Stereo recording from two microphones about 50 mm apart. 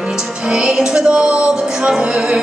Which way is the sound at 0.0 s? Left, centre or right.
Centre.